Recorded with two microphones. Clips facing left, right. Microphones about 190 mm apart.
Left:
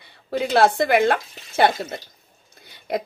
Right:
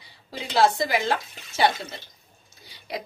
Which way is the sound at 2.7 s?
50° left (ahead or behind).